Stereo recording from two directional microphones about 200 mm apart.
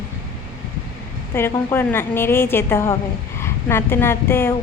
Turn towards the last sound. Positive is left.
turn(degrees=10)  # may be behind; listen again after turning